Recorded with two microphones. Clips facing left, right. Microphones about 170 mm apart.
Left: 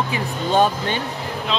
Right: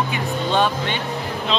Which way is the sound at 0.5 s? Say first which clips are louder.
Left 4 dB; 40° left (ahead or behind).